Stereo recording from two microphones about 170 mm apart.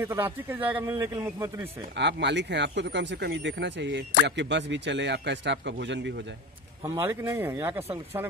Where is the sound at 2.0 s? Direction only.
90° right.